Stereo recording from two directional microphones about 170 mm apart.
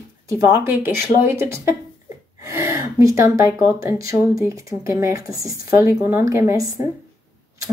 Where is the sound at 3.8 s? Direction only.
20° right (ahead or behind).